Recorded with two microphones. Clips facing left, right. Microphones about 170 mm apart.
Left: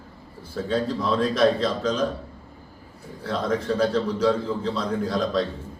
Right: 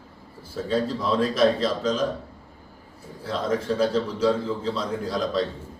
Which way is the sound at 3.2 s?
5° right (ahead or behind).